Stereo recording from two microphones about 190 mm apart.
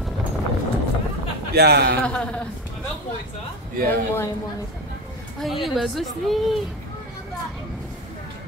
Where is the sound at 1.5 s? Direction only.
55° right (ahead or behind).